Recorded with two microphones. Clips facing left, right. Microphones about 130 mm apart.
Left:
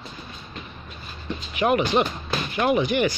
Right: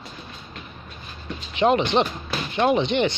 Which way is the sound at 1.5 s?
25° right (ahead or behind).